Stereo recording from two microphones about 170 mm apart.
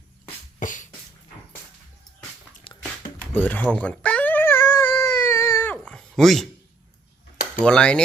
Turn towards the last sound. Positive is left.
turn(degrees=5)  # may be behind; listen again after turning